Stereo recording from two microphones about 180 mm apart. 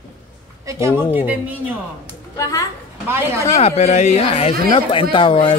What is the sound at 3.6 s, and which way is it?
Speech, 35° left (ahead or behind).